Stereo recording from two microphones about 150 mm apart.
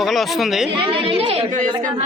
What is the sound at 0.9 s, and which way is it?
Speech, 35° right (ahead or behind).